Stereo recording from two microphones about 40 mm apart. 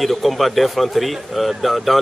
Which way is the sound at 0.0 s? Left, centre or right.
Centre.